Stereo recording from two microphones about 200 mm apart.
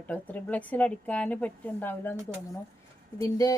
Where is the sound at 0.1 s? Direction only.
10° left (ahead or behind).